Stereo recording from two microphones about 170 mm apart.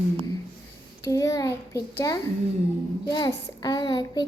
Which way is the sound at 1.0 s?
20° left (ahead or behind).